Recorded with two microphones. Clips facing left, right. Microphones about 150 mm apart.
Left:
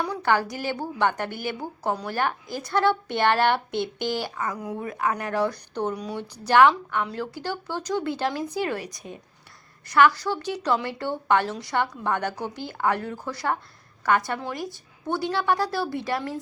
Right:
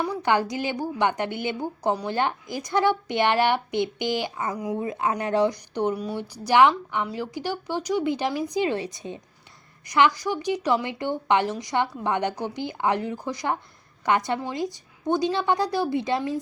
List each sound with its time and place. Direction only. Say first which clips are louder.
0.0 s a woman's voice: right 1 dB; 15° right (ahead or behind)
4.8 s a woman's voice: left 1 dB; 25° right (ahead or behind)